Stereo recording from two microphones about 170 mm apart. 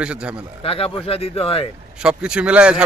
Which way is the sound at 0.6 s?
35° left (ahead or behind).